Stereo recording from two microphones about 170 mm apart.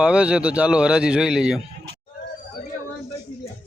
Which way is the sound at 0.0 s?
5° right (ahead or behind).